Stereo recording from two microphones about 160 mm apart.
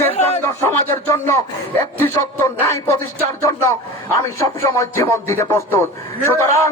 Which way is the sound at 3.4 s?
20° left (ahead or behind).